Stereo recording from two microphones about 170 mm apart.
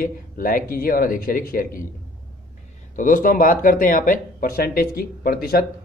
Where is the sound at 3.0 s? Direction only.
50° left (ahead or behind).